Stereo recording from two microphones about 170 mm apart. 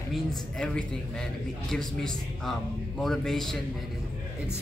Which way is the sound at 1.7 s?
5° left (ahead or behind).